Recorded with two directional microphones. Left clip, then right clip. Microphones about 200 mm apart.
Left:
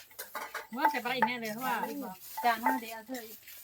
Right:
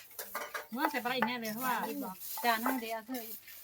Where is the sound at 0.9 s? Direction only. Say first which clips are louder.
Left 3 dB; 15° left (ahead or behind).